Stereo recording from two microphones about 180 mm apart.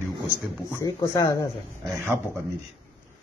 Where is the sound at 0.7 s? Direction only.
15° left (ahead or behind).